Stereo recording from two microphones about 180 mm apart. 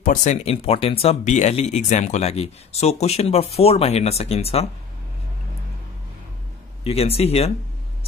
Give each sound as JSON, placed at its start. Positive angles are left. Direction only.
{"t": 0.0, "sound": "speech", "side_deg": 45}
{"t": 6.8, "sound": "speech", "side_deg": 35}